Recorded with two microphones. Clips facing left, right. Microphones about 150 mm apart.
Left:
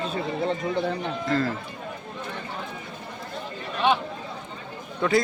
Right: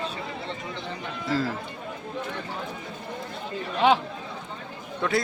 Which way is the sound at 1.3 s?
5° right (ahead or behind).